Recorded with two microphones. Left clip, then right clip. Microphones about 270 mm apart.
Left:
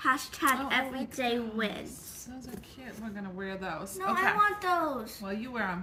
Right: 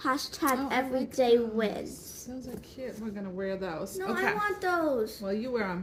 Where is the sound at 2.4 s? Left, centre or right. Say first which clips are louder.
Right 6 dB; centre.